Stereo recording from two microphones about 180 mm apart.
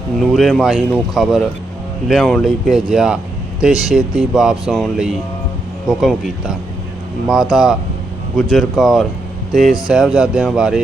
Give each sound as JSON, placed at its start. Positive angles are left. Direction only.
{"t": 0.2, "sound": "speech", "side_deg": 0}